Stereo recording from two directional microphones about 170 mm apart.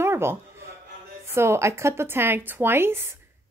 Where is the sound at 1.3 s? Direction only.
15° right (ahead or behind).